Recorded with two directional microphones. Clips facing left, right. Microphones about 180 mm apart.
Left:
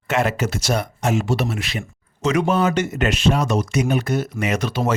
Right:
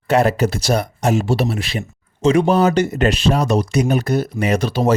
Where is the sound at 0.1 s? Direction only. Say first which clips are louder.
Right 5 dB; 35° right (ahead or behind).